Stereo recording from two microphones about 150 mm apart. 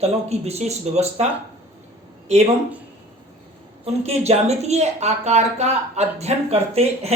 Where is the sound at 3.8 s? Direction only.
45° right (ahead or behind).